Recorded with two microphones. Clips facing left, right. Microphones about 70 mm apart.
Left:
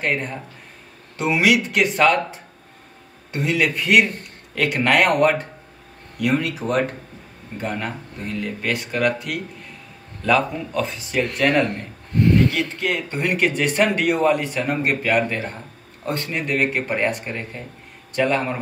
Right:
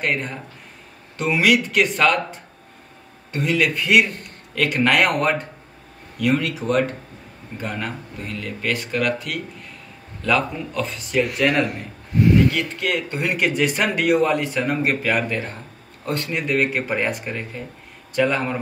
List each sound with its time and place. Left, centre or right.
0.0 s speech: centre